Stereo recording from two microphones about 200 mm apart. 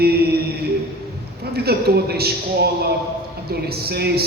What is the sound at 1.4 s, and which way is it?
A man's voice, 55° right (ahead or behind).